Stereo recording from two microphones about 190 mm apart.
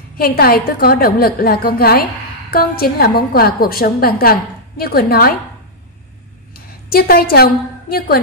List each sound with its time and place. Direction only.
0.2 s a woman's voice: 50° left (ahead or behind)
6.5 s a woman's voice: 50° left (ahead or behind)